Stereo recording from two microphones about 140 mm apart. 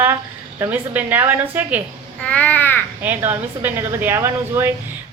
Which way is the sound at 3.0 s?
15° right (ahead or behind).